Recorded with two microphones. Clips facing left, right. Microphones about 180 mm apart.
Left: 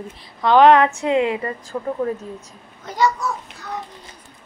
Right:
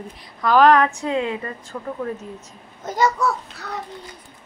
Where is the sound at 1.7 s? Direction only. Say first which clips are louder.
Left 5 dB; 35° left (ahead or behind).